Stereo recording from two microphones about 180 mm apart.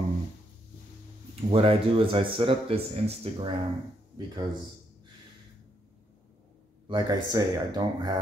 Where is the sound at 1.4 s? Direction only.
30° right (ahead or behind).